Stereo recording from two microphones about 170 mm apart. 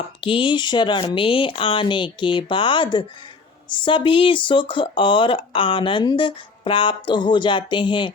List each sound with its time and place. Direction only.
0.2 s speech: 30° left (ahead or behind)